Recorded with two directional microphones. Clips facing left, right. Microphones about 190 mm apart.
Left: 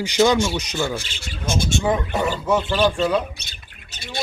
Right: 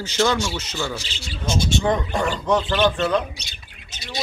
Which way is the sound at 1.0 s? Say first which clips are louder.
Even; 50° left (ahead or behind).